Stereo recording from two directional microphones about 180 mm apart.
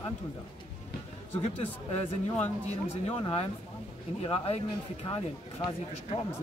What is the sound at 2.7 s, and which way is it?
Speech, 35° left (ahead or behind).